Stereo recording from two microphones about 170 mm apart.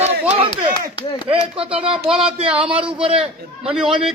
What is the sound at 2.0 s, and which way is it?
Speech, 5° right (ahead or behind).